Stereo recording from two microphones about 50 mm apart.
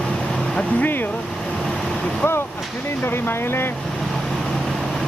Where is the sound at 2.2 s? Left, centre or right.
Left.